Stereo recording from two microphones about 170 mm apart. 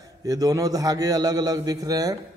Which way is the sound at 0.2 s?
20° right (ahead or behind).